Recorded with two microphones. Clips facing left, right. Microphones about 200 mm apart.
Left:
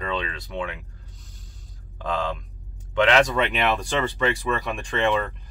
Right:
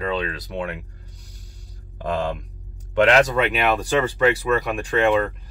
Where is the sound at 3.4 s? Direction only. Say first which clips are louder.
Right 3 dB; 5° right (ahead or behind).